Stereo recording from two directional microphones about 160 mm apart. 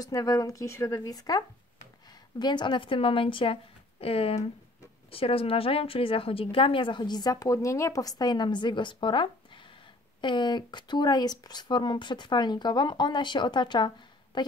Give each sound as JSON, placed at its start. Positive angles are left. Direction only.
{"t": 0.0, "sound": "a woman's voice", "side_deg": 20}